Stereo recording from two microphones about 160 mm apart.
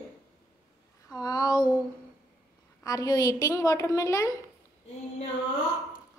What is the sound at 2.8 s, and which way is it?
A woman's voice, 20° left (ahead or behind).